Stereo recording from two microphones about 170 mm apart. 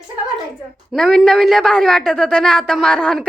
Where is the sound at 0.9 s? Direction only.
Centre (ahead or behind).